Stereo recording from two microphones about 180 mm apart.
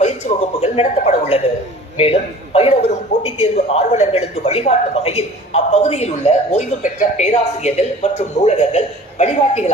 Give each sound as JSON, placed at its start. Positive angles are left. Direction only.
{"t": 0.0, "sound": "a man's voice", "side_deg": 40}